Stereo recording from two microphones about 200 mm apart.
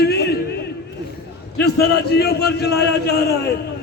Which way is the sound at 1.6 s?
55° left (ahead or behind).